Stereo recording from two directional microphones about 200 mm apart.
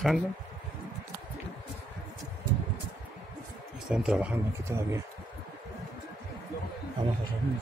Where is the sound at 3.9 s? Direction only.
5° right (ahead or behind).